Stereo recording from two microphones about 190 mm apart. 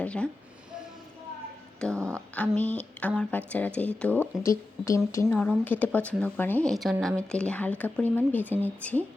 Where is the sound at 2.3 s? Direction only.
5° left (ahead or behind).